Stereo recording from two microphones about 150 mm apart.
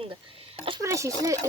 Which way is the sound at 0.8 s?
20° right (ahead or behind).